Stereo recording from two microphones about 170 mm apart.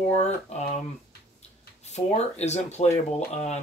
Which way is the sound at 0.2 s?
40° left (ahead or behind).